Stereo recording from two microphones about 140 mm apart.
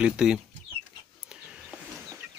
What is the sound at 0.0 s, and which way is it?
Speech, 5° right (ahead or behind).